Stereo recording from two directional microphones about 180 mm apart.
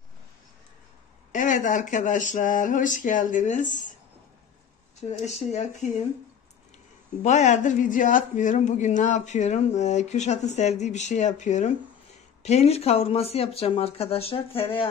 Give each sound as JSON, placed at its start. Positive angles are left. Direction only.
{"t": 1.3, "sound": "speech", "side_deg": 45}
{"t": 5.0, "sound": "speech", "side_deg": 40}
{"t": 7.2, "sound": "speech", "side_deg": 40}